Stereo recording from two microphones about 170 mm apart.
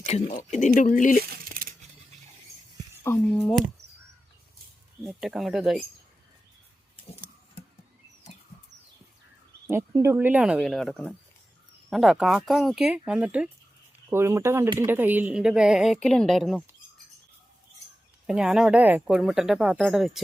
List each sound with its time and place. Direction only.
0.1 s speech: 45° left (ahead or behind)
1.2 s a sound: 60° right (ahead or behind)
3.3 s speech: centre (ahead or behind)
5.0 s speech: centre (ahead or behind)
9.6 s speech: 15° right (ahead or behind); by 16.6 s centre (ahead or behind)
18.3 s speech: 5° right (ahead or behind)